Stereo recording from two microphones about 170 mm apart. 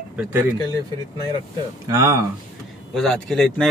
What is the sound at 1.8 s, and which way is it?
Speech, 20° right (ahead or behind).